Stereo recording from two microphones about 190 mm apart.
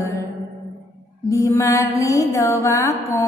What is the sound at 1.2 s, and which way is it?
Mantra, 15° left (ahead or behind).